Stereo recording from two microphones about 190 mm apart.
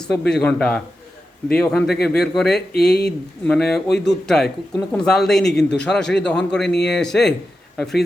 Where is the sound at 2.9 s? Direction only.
60° left (ahead or behind).